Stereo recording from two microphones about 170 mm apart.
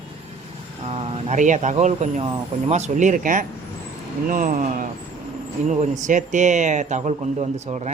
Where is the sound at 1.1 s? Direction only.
45° right (ahead or behind).